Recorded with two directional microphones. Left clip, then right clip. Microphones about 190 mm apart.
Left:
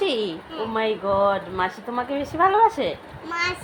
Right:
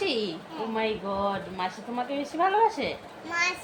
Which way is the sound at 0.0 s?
15° left (ahead or behind).